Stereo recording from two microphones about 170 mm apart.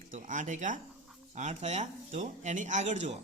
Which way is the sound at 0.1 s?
50° right (ahead or behind).